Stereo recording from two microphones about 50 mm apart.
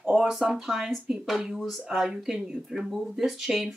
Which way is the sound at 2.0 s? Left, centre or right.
Centre.